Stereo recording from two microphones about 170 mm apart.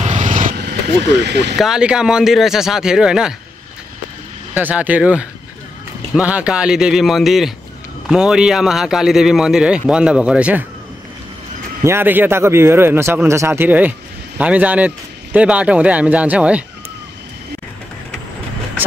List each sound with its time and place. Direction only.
0.0 s vehicle: 45° right (ahead or behind)
1.2 s speech: 85° right
1.6 s a man's voice: 5° right (ahead or behind)
4.6 s a man's voice: 10° right (ahead or behind)
11.8 s speech: 15° right (ahead or behind)